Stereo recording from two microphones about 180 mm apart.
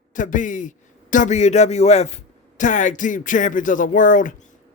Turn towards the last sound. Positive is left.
turn(degrees=45)  # may be behind; listen again after turning